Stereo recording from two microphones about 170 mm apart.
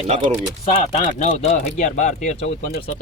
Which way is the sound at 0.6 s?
35° left (ahead or behind).